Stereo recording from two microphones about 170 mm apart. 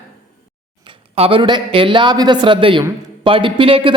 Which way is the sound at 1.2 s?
30° right (ahead or behind).